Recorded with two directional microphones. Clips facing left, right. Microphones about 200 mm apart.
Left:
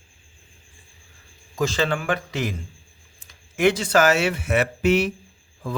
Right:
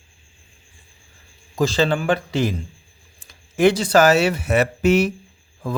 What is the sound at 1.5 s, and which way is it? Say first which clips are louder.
A man's voice: right 4 dB; 35° right (ahead or behind).